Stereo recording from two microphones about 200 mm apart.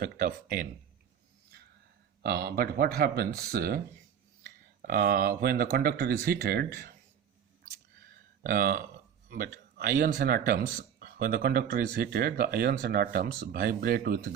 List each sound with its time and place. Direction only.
0.0 s speech: 45° right (ahead or behind)
2.2 s speech: 50° right (ahead or behind)
8.4 s speech: 45° right (ahead or behind)